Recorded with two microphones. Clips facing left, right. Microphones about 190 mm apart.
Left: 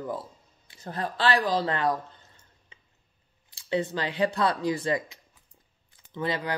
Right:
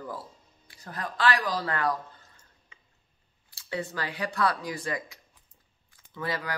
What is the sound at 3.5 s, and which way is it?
Speech, 20° left (ahead or behind).